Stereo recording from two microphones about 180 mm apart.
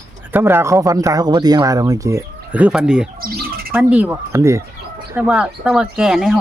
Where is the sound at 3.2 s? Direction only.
55° right (ahead or behind).